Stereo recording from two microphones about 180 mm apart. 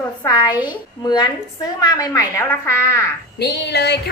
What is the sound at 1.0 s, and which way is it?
A woman's voice, 20° left (ahead or behind).